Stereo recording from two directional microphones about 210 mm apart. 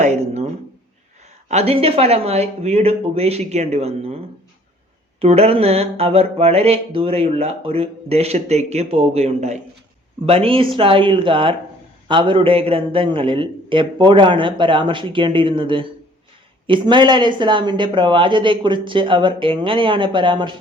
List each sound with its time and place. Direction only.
0.0 s a sound: 30° right (ahead or behind)
1.5 s mantra: 30° right (ahead or behind)
5.2 s mantra: 30° right (ahead or behind)